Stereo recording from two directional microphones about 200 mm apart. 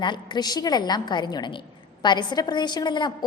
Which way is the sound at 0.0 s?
25° left (ahead or behind).